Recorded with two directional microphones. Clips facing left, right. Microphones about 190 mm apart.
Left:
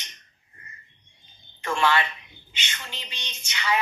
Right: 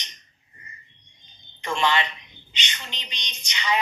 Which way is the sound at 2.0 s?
5° left (ahead or behind).